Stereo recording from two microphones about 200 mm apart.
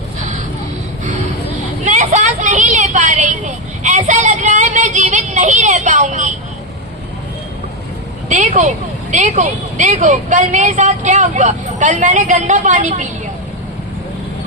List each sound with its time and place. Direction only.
1.8 s vehicle: 40° right (ahead or behind)
8.3 s speech: 35° right (ahead or behind)